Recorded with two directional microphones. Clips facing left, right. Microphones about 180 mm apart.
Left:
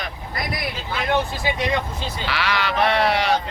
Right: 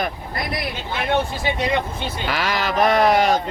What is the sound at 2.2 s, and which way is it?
Speech, 45° right (ahead or behind).